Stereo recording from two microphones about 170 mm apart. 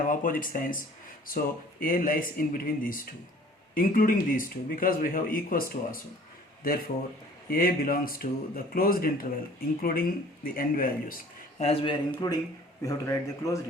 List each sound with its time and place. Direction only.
0.1 s speech: 55° left (ahead or behind)
1.8 s speech: 55° left (ahead or behind)
11.6 s speech: 35° left (ahead or behind); by 13.6 s 20° left (ahead or behind)